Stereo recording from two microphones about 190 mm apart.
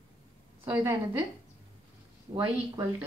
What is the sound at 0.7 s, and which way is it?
Speech, 15° right (ahead or behind).